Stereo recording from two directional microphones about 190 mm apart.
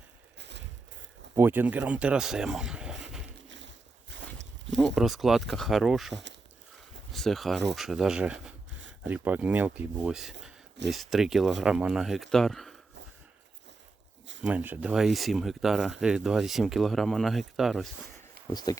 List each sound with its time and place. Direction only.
0.3 s a sound: 65° right (ahead or behind)
1.4 s speech: 10° right (ahead or behind)
4.1 s walk: 70° right (ahead or behind)
4.9 s speech: centre (ahead or behind)
14.4 s speech: 10° right (ahead or behind)
18.5 s speech: 20° left (ahead or behind)